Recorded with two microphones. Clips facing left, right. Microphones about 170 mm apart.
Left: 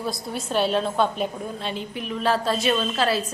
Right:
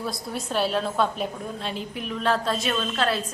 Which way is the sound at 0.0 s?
Centre (ahead or behind).